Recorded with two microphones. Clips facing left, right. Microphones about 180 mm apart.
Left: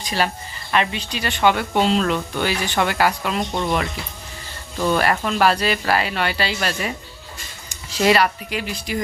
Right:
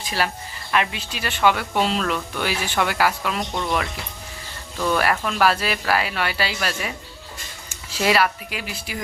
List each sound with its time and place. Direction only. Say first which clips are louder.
0.0 s speech: left 2 dB; 5° right (ahead or behind)
3.5 s speech: left 3 dB; 15° left (ahead or behind)
4.9 s speech: left 1 dB; centre (ahead or behind)
7.9 s speech: left 3 dB; 5° right (ahead or behind)